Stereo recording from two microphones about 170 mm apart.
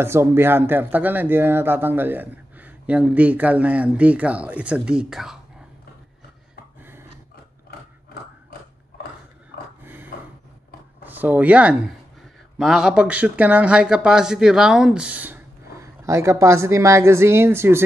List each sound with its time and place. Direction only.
0.0 s speech: 15° right (ahead or behind)
6.8 s dog: 15° right (ahead or behind)
9.8 s dog: 10° right (ahead or behind)
11.1 s speech: 10° right (ahead or behind)